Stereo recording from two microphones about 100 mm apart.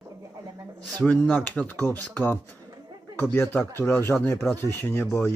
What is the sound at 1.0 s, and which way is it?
Speech, 15° left (ahead or behind).